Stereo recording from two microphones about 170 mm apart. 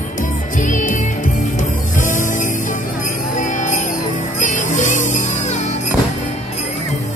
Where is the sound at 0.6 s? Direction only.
50° left (ahead or behind).